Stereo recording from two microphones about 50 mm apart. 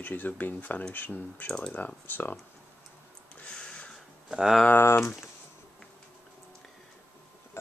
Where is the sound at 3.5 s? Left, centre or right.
Centre.